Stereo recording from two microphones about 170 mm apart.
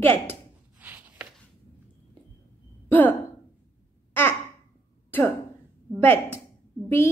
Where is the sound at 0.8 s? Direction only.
10° right (ahead or behind).